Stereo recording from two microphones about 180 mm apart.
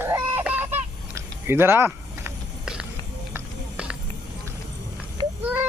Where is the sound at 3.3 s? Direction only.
5° right (ahead or behind).